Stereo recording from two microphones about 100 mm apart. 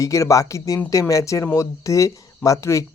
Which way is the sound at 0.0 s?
30° left (ahead or behind).